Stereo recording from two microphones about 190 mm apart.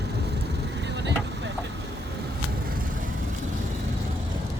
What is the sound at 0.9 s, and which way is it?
Vehicle, 65° right (ahead or behind).